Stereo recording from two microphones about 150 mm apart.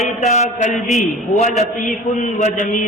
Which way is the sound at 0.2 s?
50° left (ahead or behind).